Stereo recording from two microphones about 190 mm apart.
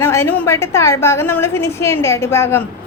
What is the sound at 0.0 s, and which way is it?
A woman's voice, 15° left (ahead or behind).